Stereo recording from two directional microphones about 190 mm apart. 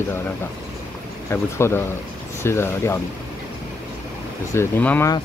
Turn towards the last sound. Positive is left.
turn(degrees=10)  # may be behind; listen again after turning